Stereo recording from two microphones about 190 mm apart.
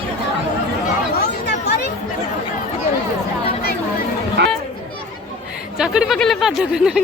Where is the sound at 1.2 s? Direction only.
55° left (ahead or behind).